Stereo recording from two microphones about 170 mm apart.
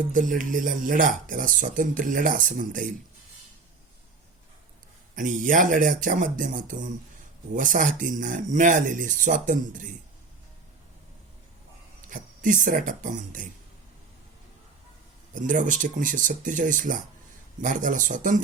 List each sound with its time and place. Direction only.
0.1 s speech: 50° right (ahead or behind)
5.1 s speech: 50° right (ahead or behind)
12.0 s speech: 50° right (ahead or behind)
15.4 s speech: 50° right (ahead or behind)